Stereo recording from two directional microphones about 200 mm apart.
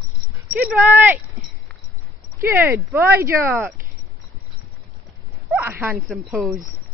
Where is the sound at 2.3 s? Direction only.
10° right (ahead or behind).